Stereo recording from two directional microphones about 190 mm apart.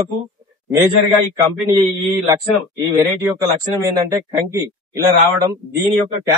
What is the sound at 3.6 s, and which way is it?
A man's voice, 20° right (ahead or behind).